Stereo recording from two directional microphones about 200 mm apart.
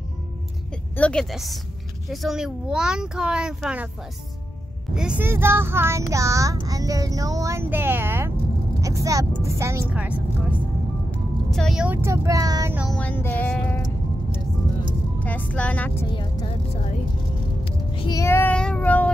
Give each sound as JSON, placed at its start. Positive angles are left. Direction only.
{"t": 0.9, "sound": "a child's voice", "side_deg": 5}
{"t": 4.9, "sound": "speech", "side_deg": -5}
{"t": 12.7, "sound": "speech", "side_deg": 0}
{"t": 15.1, "sound": "child singing", "side_deg": 10}
{"t": 16.1, "sound": "speech", "side_deg": 25}
{"t": 17.6, "sound": "music", "side_deg": 25}
{"t": 18.2, "sound": "child singing", "side_deg": 10}